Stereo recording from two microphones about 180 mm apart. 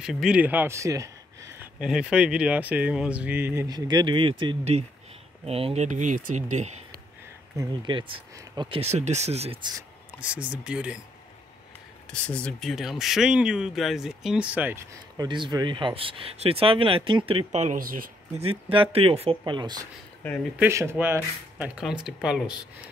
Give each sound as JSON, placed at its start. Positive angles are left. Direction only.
{"t": 0.0, "sound": "speech", "side_deg": -5}
{"t": 1.8, "sound": "speech", "side_deg": -5}
{"t": 7.5, "sound": "speech", "side_deg": -25}
{"t": 10.2, "sound": "speech", "side_deg": -5}
{"t": 12.1, "sound": "speech", "side_deg": 5}
{"t": 15.1, "sound": "speech", "side_deg": -25}
{"t": 18.4, "sound": "speech", "side_deg": -30}
{"t": 20.5, "sound": "speech", "side_deg": -15}